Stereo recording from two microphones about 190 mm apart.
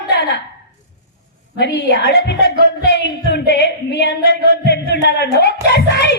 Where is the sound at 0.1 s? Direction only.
60° left (ahead or behind).